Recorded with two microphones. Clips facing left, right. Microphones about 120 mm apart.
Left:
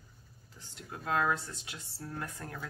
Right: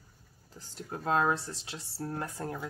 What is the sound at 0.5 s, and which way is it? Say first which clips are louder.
Speech: right 6 dB; 35° right (ahead or behind).